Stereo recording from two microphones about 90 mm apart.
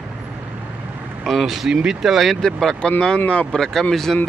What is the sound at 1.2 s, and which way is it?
Speech, centre (ahead or behind).